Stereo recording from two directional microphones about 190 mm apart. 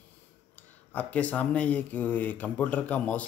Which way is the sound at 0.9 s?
10° left (ahead or behind).